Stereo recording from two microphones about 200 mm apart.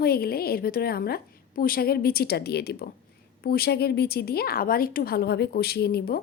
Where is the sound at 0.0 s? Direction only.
50° left (ahead or behind).